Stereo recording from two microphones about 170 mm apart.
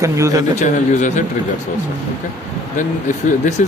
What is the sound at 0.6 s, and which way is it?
Speech, 45° left (ahead or behind).